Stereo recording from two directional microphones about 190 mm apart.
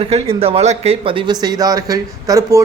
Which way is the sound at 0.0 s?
30° right (ahead or behind).